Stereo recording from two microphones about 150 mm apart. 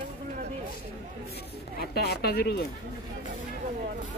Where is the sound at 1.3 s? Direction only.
90° left.